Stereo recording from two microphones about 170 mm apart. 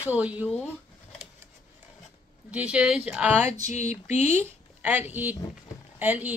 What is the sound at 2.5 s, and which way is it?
Speech, 5° right (ahead or behind).